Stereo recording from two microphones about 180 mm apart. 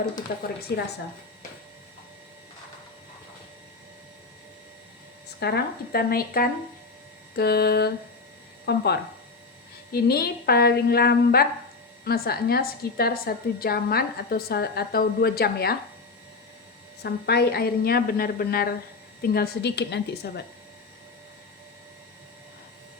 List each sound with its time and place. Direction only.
0.7 s a woman's voice: 65° left (ahead or behind)
5.4 s a woman's voice: 65° left (ahead or behind)
17.0 s a woman's voice: 65° left (ahead or behind)